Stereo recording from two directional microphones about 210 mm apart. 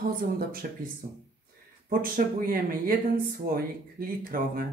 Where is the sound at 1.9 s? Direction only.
40° right (ahead or behind).